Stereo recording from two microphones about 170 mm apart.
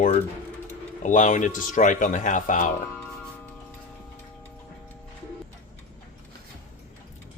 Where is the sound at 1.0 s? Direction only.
50° left (ahead or behind).